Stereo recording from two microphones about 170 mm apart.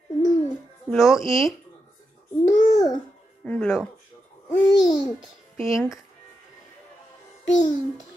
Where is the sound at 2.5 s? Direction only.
45° left (ahead or behind).